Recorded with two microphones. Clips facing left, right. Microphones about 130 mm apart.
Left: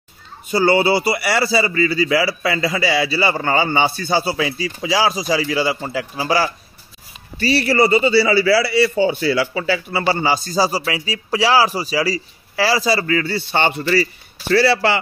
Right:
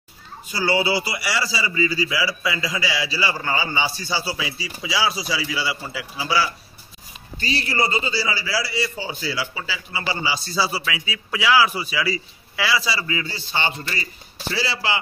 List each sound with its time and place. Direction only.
0.5 s a man's voice: 55° left (ahead or behind)
7.3 s a man's voice: 65° left (ahead or behind)
14.5 s a man's voice: 65° left (ahead or behind)